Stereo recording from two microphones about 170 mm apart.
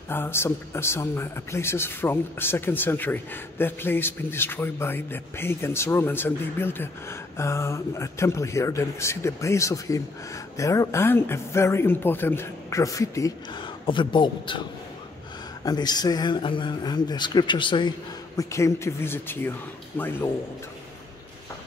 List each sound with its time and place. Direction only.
0.1 s speech: 15° left (ahead or behind)